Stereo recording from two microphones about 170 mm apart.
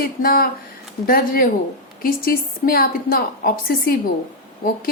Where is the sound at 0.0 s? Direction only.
55° left (ahead or behind).